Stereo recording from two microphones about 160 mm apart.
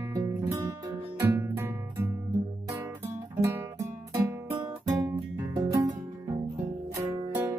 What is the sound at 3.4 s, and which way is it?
Music, 15° right (ahead or behind).